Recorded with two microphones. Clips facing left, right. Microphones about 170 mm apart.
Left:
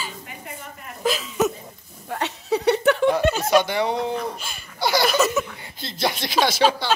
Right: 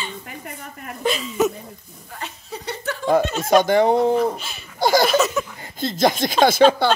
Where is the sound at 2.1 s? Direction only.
70° left (ahead or behind).